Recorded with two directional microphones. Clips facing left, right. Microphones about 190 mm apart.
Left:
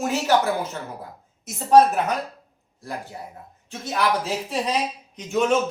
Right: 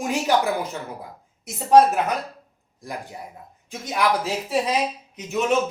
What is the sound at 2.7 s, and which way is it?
Speech, 15° right (ahead or behind).